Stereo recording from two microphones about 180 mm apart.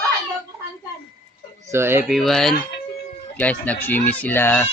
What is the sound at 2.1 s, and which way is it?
Speech, centre (ahead or behind).